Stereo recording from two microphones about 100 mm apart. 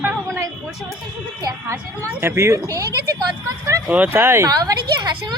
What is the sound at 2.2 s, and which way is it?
Speech, 25° right (ahead or behind).